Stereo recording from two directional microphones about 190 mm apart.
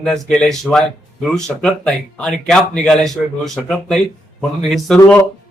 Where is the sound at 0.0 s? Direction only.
5° left (ahead or behind).